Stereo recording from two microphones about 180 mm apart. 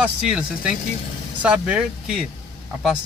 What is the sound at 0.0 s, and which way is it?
Speech, 5° right (ahead or behind).